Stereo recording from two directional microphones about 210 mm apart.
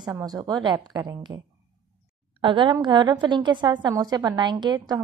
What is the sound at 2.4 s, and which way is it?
Speech, 25° right (ahead or behind).